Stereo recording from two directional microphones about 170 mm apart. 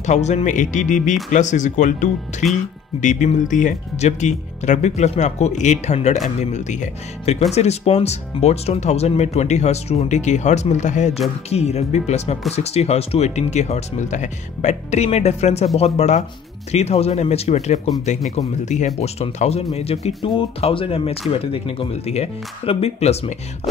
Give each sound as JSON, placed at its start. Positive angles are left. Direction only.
{"t": 0.0, "sound": "speech", "side_deg": 45}
{"t": 18.9, "sound": "speech", "side_deg": 40}